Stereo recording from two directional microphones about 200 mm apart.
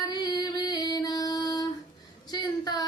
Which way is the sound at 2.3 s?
20° left (ahead or behind).